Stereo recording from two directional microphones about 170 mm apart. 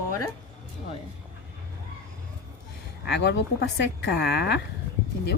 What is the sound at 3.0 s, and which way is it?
A woman's voice, 85° left.